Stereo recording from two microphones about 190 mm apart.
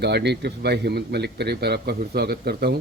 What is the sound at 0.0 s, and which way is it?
A man's voice, 60° right (ahead or behind).